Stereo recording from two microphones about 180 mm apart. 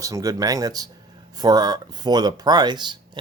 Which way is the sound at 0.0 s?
20° right (ahead or behind).